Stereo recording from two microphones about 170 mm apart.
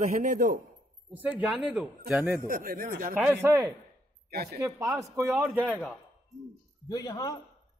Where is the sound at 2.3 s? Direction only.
55° right (ahead or behind).